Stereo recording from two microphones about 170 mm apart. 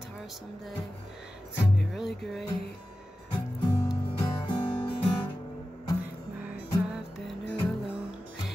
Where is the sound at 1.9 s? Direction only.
Centre (ahead or behind).